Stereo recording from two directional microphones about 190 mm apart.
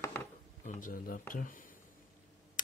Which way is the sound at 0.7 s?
45° left (ahead or behind).